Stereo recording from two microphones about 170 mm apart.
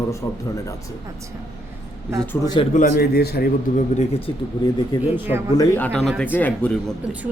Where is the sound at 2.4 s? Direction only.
25° left (ahead or behind).